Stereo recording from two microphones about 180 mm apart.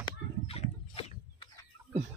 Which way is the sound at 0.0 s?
30° left (ahead or behind).